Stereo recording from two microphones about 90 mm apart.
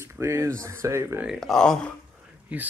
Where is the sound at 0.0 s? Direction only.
30° right (ahead or behind).